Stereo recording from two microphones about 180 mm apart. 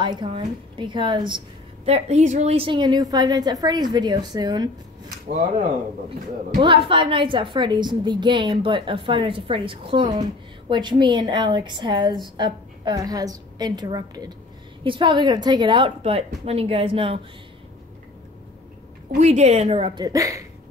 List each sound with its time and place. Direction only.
0.0 s a woman's voice: 25° right (ahead or behind)
1.9 s a woman's voice: 35° right (ahead or behind)
6.6 s a woman's voice: 30° right (ahead or behind)
19.1 s a woman's voice: 40° right (ahead or behind)
20.1 s speech: 20° right (ahead or behind)